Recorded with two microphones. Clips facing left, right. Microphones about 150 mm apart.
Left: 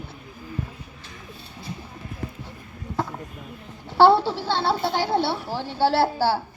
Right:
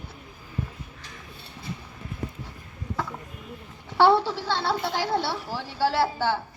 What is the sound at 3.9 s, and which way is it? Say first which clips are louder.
A child's voice: left 3 dB; 30° left (ahead or behind).